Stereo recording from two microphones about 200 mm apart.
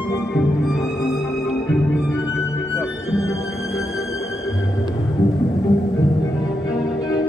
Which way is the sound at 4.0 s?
15° left (ahead or behind).